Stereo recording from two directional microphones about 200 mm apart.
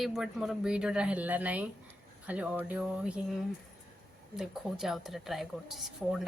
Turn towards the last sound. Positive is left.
turn(degrees=0)  # may be behind; listen again after turning